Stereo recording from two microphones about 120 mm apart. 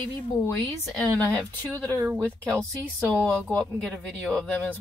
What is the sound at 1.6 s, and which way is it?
Speech, 15° left (ahead or behind).